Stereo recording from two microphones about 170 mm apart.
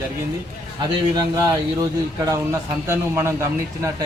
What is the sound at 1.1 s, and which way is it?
A man's voice, 20° right (ahead or behind).